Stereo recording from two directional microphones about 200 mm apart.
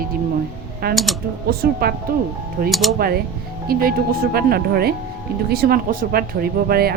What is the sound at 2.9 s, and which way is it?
Speech, 50° right (ahead or behind).